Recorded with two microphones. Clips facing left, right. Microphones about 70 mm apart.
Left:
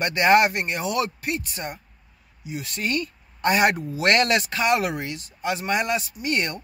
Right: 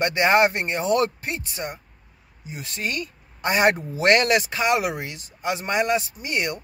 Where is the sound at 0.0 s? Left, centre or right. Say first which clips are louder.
Even; right.